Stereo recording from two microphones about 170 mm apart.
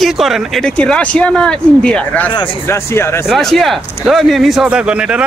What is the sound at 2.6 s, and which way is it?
Speech, 15° left (ahead or behind).